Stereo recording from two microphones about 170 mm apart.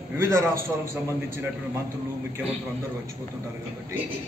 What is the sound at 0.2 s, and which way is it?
Speech, 15° right (ahead or behind).